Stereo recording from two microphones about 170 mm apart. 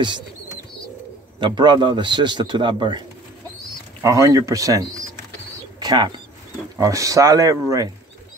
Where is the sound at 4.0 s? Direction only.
20° right (ahead or behind).